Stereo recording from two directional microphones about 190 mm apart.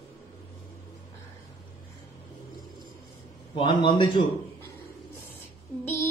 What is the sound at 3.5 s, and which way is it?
Speech, 25° left (ahead or behind).